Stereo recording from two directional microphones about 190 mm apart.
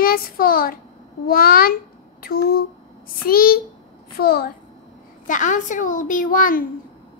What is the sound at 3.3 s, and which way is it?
A child's voice, 50° left (ahead or behind).